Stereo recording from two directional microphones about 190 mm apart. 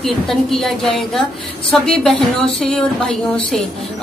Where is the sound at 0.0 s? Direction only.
Centre (ahead or behind).